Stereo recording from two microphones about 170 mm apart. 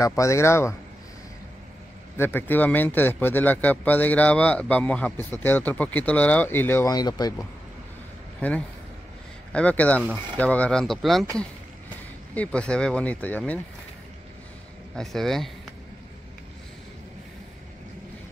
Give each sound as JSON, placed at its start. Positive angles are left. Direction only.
{"t": 0.0, "sound": "speech", "side_deg": 20}
{"t": 2.1, "sound": "speech", "side_deg": 10}
{"t": 8.4, "sound": "speech", "side_deg": 10}
{"t": 12.4, "sound": "speech", "side_deg": 5}
{"t": 15.0, "sound": "speech", "side_deg": 0}